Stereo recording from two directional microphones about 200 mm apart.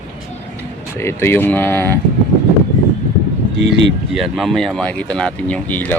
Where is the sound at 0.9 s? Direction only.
10° left (ahead or behind).